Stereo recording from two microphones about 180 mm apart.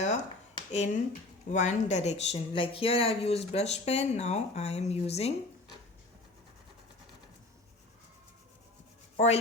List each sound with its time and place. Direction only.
0.0 s a sound: 40° left (ahead or behind)
1.5 s speech: 40° left (ahead or behind)
9.1 s speech: 35° left (ahead or behind)